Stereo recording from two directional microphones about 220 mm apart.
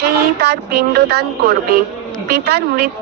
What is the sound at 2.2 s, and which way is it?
Speech, 45° right (ahead or behind).